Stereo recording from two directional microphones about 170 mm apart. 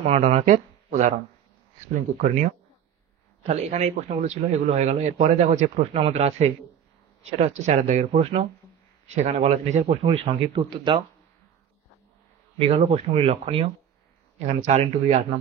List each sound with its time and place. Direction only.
0.0 s a man's voice: 40° right (ahead or behind)
12.5 s a man's voice: 35° right (ahead or behind)